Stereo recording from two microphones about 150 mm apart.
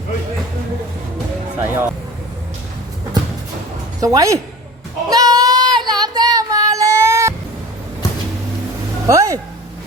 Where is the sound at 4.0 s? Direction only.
20° right (ahead or behind).